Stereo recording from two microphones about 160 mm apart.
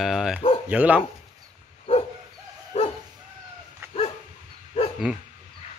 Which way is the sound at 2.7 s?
45° left (ahead or behind).